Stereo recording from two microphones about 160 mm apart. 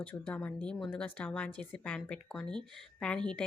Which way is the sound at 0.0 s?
10° left (ahead or behind).